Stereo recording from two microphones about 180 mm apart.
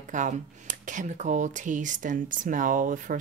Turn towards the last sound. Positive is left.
turn(degrees=-45)  # may be behind; listen again after turning